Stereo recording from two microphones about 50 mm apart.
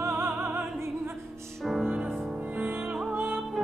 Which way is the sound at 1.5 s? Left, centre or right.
Centre.